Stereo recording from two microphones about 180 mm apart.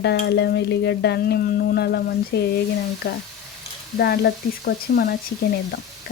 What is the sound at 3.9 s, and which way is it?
Speech, 65° left (ahead or behind).